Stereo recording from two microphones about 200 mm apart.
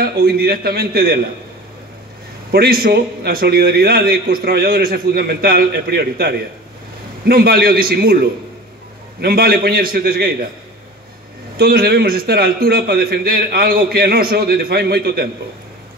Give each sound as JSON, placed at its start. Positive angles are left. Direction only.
{"t": 0.0, "sound": "a man's voice", "side_deg": -50}
{"t": 2.5, "sound": "a man's voice", "side_deg": -50}
{"t": 11.5, "sound": "a man's voice", "side_deg": -50}